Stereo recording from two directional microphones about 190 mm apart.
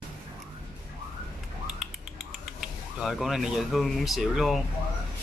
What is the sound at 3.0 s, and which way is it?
Speech, centre (ahead or behind).